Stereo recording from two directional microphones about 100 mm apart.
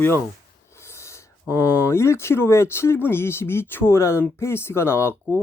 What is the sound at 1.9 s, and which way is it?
Speech, 25° left (ahead or behind).